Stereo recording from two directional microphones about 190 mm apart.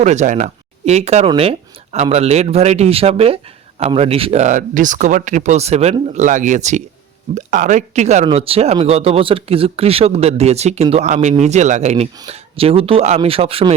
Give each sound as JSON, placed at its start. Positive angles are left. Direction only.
{"t": 0.0, "sound": "speech", "side_deg": -35}